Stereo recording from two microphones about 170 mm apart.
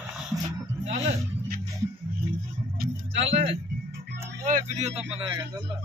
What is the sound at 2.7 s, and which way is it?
Vehicle, 60° right (ahead or behind).